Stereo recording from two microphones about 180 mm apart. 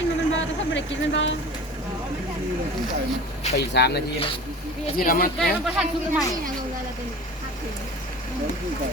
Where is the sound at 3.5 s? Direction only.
70° left (ahead or behind).